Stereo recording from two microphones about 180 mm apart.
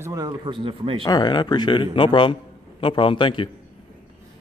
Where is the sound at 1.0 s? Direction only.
25° left (ahead or behind).